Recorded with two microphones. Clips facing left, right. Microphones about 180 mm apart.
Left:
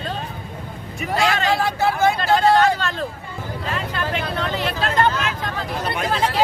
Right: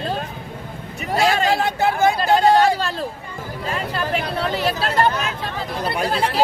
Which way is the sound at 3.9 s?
35° right (ahead or behind).